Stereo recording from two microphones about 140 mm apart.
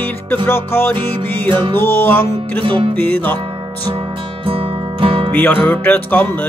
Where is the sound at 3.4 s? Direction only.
35° right (ahead or behind).